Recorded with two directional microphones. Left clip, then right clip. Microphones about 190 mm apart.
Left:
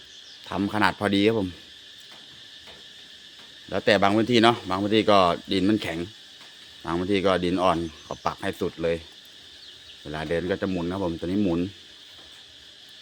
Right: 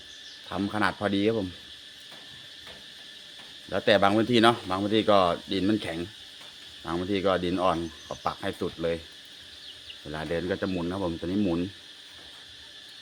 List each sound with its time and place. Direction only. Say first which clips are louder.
0.4 s speech: left 4 dB; 35° left (ahead or behind)
3.7 s speech: left 1 dB; 30° left (ahead or behind)
10.1 s speech: left 3 dB; 30° left (ahead or behind)